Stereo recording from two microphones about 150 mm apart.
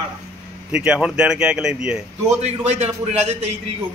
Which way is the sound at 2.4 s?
45° right (ahead or behind).